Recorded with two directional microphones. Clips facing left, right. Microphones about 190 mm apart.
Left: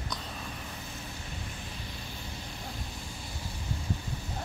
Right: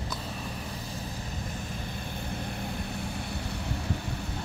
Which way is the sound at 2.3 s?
60° right (ahead or behind).